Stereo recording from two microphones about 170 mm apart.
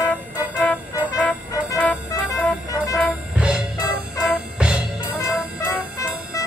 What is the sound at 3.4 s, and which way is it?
Music, 5° right (ahead or behind).